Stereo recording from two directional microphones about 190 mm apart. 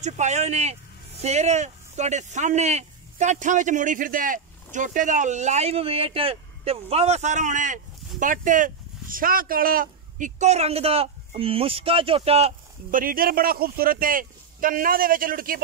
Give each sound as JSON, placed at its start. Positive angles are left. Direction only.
{"t": 0.0, "sound": "speech", "side_deg": -35}
{"t": 13.0, "sound": "speech", "side_deg": -50}